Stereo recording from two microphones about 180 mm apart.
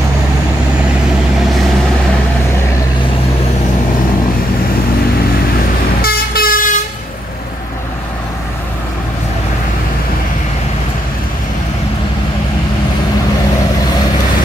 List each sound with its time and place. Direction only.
6.0 s vehicle: 55° left (ahead or behind)